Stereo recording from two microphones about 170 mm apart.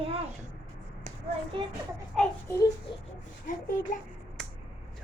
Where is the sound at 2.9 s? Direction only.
30° left (ahead or behind).